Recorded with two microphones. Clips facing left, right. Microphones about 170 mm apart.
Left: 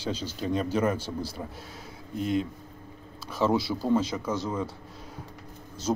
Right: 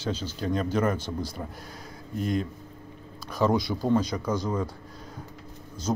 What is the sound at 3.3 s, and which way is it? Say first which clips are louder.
Speech: right 1 dB; 5° left (ahead or behind).